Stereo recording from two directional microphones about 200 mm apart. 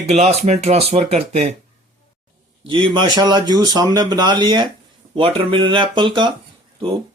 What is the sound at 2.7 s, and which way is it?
Speech, 25° right (ahead or behind).